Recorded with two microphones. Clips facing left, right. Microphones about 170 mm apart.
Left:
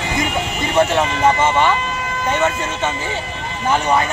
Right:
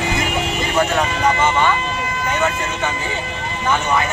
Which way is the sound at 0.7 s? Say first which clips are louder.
Left 3 dB; 25° left (ahead or behind).